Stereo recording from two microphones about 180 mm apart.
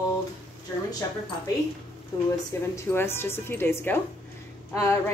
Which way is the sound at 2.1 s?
20° left (ahead or behind).